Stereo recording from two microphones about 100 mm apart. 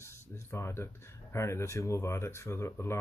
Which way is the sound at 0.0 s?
25° left (ahead or behind).